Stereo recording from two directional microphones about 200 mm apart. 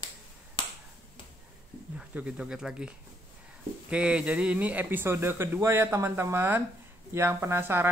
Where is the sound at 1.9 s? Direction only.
5° right (ahead or behind).